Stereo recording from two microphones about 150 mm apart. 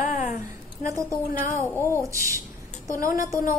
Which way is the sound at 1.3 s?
70° left (ahead or behind).